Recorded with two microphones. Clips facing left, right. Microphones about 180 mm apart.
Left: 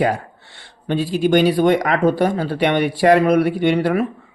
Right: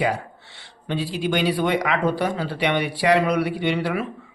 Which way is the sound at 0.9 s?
45° left (ahead or behind).